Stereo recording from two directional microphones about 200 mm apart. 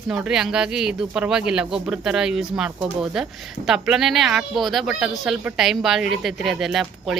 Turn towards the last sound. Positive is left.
turn(degrees=0)  # may be behind; listen again after turning